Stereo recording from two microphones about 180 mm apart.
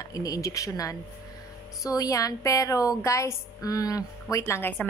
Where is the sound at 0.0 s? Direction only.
20° left (ahead or behind).